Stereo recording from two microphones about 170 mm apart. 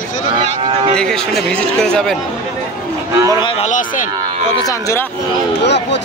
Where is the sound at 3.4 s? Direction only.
30° left (ahead or behind).